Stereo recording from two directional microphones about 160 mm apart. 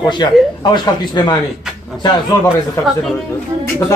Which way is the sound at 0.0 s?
25° left (ahead or behind).